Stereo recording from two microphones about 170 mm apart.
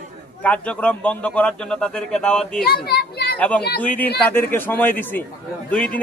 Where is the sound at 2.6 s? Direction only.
70° left (ahead or behind).